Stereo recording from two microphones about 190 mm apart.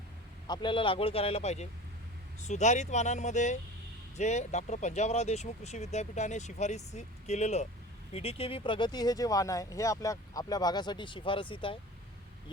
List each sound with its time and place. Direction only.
0.4 s speech: 25° left (ahead or behind)